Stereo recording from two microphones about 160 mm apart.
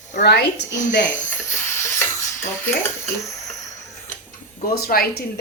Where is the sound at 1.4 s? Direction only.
15° left (ahead or behind).